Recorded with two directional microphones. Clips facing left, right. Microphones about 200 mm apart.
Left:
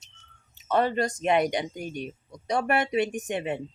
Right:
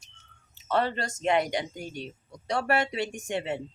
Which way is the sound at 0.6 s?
15° left (ahead or behind).